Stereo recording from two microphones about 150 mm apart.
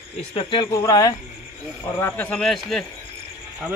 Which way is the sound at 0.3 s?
35° left (ahead or behind).